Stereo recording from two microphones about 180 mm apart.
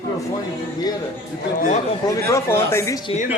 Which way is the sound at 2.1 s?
15° left (ahead or behind).